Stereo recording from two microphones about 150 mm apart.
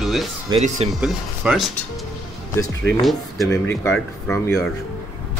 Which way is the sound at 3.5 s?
15° left (ahead or behind).